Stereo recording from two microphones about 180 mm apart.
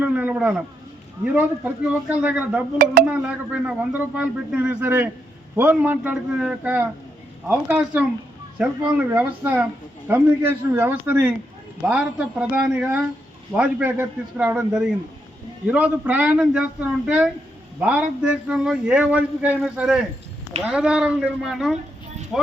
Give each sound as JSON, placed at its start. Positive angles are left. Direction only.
{"t": 0.0, "sound": "speech", "side_deg": -10}
{"t": 2.7, "sound": "speech", "side_deg": -50}
{"t": 3.1, "sound": "speech", "side_deg": -5}
{"t": 11.9, "sound": "a sound", "side_deg": -5}
{"t": 13.6, "sound": "speech", "side_deg": -10}
{"t": 17.7, "sound": "a sound", "side_deg": -10}